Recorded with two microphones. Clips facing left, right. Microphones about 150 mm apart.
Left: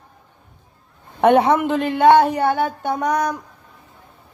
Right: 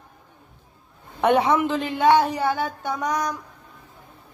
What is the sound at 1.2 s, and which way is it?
Speech, 55° left (ahead or behind).